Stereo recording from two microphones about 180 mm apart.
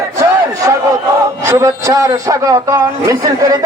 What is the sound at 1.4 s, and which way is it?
A man's voice, 20° right (ahead or behind).